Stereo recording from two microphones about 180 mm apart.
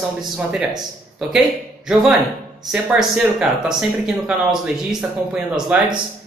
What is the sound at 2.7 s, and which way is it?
Speech, 5° right (ahead or behind).